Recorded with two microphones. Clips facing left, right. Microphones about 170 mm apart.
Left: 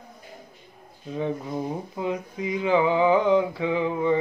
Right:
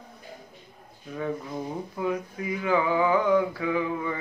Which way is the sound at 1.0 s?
20° left (ahead or behind).